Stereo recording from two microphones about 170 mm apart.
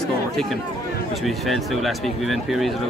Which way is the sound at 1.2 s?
Centre (ahead or behind).